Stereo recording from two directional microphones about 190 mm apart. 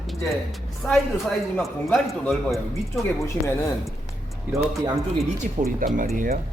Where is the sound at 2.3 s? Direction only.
Centre (ahead or behind).